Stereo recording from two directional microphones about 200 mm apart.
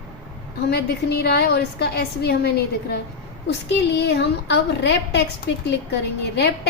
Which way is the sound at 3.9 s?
60° left (ahead or behind).